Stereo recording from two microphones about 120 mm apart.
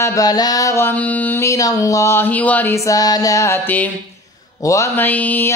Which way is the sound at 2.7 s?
25° left (ahead or behind).